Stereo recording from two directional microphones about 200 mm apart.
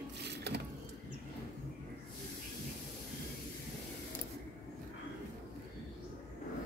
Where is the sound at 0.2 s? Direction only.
55° right (ahead or behind).